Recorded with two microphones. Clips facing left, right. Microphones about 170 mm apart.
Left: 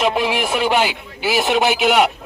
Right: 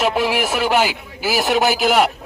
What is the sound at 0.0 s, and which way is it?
Speech, 5° right (ahead or behind).